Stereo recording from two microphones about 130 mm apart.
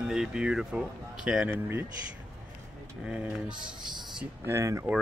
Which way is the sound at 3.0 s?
5° right (ahead or behind).